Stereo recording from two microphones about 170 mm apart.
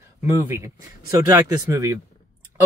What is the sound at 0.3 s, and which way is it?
Speech, 15° right (ahead or behind).